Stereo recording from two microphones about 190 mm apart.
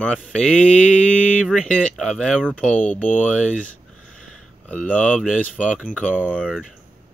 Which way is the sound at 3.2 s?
5° left (ahead or behind).